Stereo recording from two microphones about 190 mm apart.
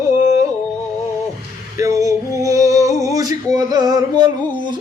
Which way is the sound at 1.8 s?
15° right (ahead or behind).